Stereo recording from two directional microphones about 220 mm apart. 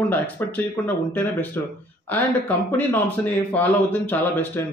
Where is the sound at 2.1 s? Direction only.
10° left (ahead or behind).